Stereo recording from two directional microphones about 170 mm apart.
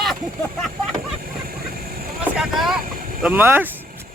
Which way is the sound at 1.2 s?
60° right (ahead or behind).